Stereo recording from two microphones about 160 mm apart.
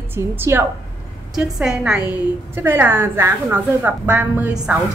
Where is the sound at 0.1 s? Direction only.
15° right (ahead or behind).